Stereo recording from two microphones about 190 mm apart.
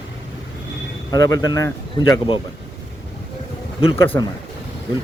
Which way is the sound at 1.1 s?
15° left (ahead or behind).